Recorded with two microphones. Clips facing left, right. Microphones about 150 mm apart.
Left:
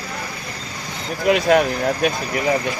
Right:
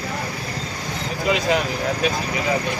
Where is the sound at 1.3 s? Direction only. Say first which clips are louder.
Left 5 dB; 55° left (ahead or behind).